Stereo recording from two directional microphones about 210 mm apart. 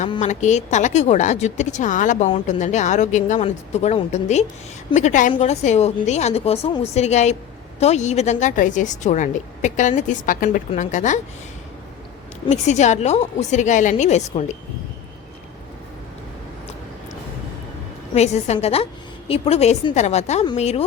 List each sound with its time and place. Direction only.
0.2 s a woman's voice: 35° left (ahead or behind)
12.5 s a woman's voice: 35° left (ahead or behind)
18.1 s a woman's voice: 30° left (ahead or behind)